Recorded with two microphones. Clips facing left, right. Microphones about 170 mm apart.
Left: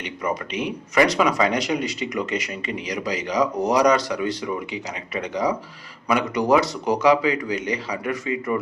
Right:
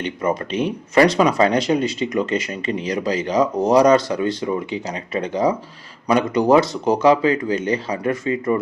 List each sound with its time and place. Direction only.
0.0 s speech: 25° right (ahead or behind)